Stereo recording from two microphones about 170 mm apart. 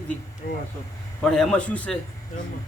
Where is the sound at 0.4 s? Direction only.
60° left (ahead or behind).